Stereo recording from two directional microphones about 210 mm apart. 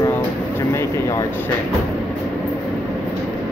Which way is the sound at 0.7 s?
15° left (ahead or behind).